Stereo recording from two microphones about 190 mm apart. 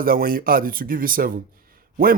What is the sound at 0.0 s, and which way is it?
Speech, 50° right (ahead or behind).